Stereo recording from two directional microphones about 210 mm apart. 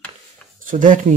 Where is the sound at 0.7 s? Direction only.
40° right (ahead or behind).